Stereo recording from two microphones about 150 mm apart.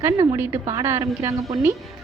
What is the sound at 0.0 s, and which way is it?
A woman's voice, 15° right (ahead or behind).